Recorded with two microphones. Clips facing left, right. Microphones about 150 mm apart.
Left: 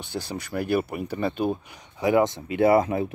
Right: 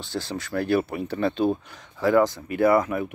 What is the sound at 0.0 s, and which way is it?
Speech, 15° left (ahead or behind).